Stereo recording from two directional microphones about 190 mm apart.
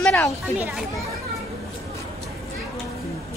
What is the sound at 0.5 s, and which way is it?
Speech, 5° right (ahead or behind).